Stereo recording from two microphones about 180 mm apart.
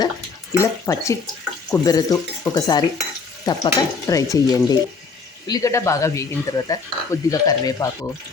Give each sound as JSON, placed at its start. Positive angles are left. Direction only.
{"t": 0.5, "sound": "speech", "side_deg": 15}